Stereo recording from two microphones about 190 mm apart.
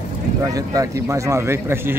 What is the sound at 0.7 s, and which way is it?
Speech, 15° right (ahead or behind).